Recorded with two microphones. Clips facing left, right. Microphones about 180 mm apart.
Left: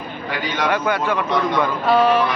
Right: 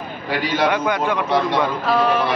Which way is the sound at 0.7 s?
15° right (ahead or behind).